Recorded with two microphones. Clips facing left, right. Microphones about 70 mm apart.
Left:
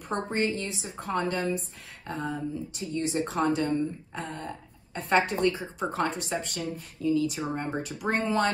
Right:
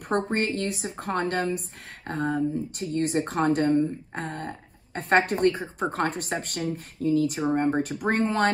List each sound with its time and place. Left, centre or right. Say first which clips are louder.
0.1 s speech: right 3 dB; right